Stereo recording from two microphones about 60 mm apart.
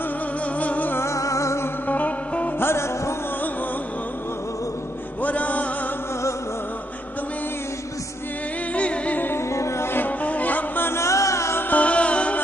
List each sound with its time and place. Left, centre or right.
0.6 s music: left
0.9 s music: left
1.9 s music: left
2.6 s music: left
5.2 s music: left
8.7 s music: left
9.2 s music: left
9.5 s music: left
9.9 s music: left
10.9 s music: left
11.7 s music: left